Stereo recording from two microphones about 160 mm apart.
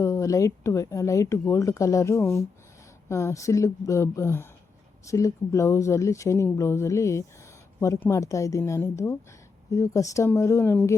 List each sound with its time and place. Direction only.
0.0 s speech: 20° left (ahead or behind)